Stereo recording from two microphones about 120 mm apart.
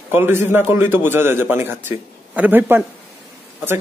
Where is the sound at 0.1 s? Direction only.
20° right (ahead or behind).